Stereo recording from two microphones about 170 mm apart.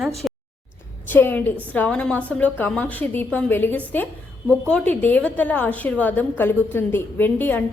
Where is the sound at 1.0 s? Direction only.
10° left (ahead or behind).